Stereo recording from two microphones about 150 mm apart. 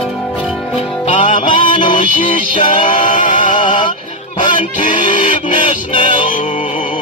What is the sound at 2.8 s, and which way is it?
Music, 60° left (ahead or behind).